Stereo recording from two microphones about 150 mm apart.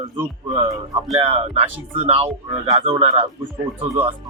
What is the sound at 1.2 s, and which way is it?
Speech, 40° right (ahead or behind).